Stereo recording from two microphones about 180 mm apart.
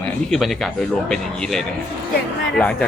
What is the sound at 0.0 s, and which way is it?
Speech, centre (ahead or behind).